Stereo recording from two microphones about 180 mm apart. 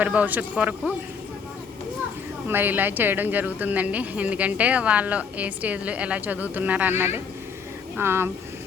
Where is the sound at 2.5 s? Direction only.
10° right (ahead or behind).